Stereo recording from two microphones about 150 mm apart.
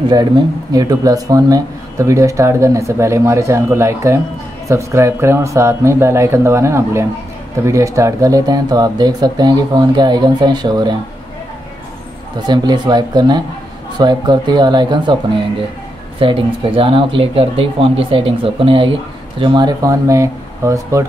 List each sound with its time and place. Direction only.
0.7 s speech: 25° right (ahead or behind)
12.4 s speech: 30° right (ahead or behind)
16.2 s speech: 35° right (ahead or behind); by 21.0 s 20° right (ahead or behind)